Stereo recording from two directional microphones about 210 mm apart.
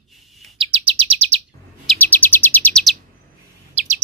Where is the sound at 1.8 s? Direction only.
5° left (ahead or behind).